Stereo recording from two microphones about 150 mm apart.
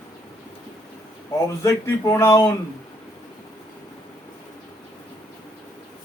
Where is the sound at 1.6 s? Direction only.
20° left (ahead or behind).